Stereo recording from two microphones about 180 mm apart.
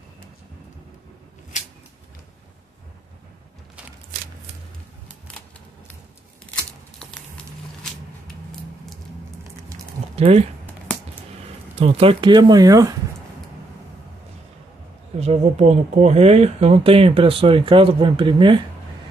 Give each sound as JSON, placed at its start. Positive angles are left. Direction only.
{"t": 6.5, "sound": "a sound", "side_deg": 5}
{"t": 10.1, "sound": "speech", "side_deg": -35}
{"t": 11.8, "sound": "speech", "side_deg": -30}
{"t": 15.1, "sound": "speech", "side_deg": -35}